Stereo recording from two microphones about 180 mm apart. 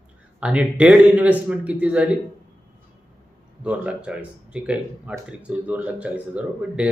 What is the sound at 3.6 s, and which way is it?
Speech, 5° right (ahead or behind).